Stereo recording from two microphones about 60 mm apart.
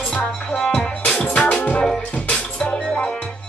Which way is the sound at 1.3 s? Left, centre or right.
Left.